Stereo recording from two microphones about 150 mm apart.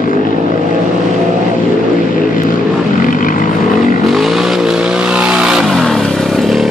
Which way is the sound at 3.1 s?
65° left (ahead or behind).